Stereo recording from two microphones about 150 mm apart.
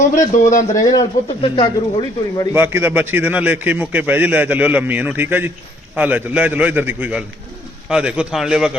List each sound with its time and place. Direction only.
0.0 s a man's voice: 55° left (ahead or behind)
0.7 s speech: 25° left (ahead or behind)
1.4 s speech: 35° left (ahead or behind)
2.5 s a man's voice: 15° right (ahead or behind)